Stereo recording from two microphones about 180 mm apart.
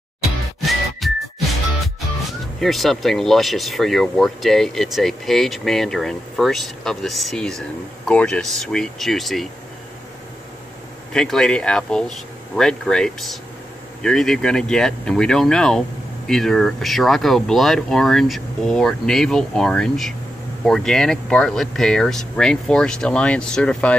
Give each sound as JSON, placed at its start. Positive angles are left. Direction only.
{"t": 0.6, "sound": "whistling", "side_deg": 0}
{"t": 2.6, "sound": "speech", "side_deg": 0}
{"t": 11.1, "sound": "speech", "side_deg": 5}